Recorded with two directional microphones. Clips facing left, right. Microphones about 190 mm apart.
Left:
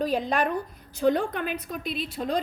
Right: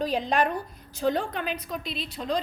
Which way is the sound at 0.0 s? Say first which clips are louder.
Even; 50° left (ahead or behind).